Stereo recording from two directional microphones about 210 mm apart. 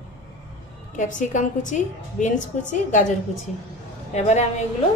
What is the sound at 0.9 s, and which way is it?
A woman's voice, 35° left (ahead or behind).